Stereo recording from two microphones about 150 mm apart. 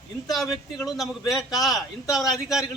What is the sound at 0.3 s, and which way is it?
A man's voice, centre (ahead or behind).